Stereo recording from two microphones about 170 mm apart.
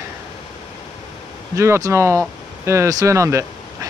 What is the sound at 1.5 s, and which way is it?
Speech, 15° right (ahead or behind).